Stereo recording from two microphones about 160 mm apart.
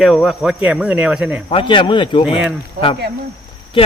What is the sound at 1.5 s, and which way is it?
Speech, 35° left (ahead or behind).